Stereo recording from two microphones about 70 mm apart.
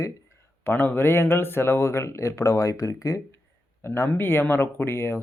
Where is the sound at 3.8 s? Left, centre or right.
Left.